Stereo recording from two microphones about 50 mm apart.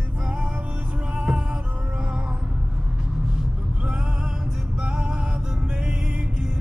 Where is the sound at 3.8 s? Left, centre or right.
Centre.